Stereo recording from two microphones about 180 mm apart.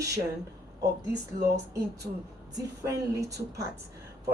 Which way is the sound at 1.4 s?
20° right (ahead or behind).